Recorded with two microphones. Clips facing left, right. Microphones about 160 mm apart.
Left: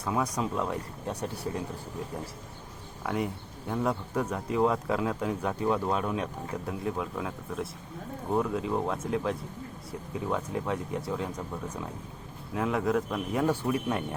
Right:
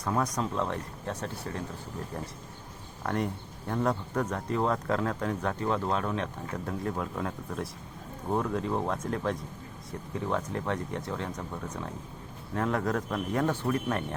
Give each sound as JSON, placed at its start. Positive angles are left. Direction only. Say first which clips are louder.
{"t": 0.0, "sound": "speech", "louder": "even", "side_deg": 5}
{"t": 3.0, "sound": "speech", "louder": "even", "side_deg": 5}